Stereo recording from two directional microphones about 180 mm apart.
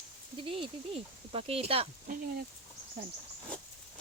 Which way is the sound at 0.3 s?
30° right (ahead or behind).